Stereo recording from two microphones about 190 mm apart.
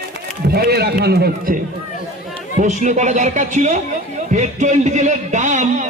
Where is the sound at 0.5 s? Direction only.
55° right (ahead or behind).